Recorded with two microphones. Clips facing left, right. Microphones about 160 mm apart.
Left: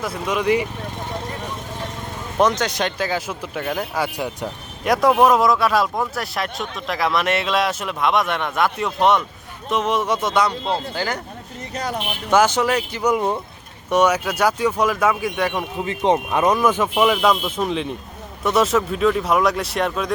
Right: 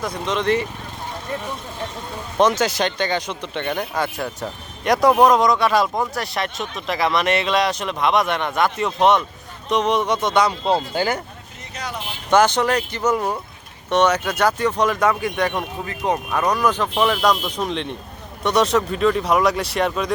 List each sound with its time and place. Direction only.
0.0 s speech: 5° left (ahead or behind)
2.4 s speech: 5° right (ahead or behind)
10.7 s speech: 15° right (ahead or behind)
11.7 s speech: 40° left (ahead or behind)
12.3 s speech: 5° left (ahead or behind)
15.8 s speech: 20° left (ahead or behind)
16.7 s speech: 5° left (ahead or behind)